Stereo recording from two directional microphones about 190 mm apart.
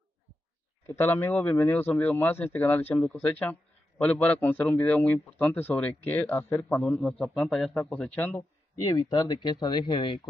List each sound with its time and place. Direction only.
0.8 s a man's voice: 10° left (ahead or behind)
8.8 s speech: 20° left (ahead or behind)